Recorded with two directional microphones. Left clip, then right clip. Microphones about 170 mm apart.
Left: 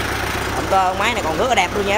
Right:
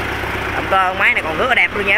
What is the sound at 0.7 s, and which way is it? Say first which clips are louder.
Speech: right 3 dB; 15° left (ahead or behind).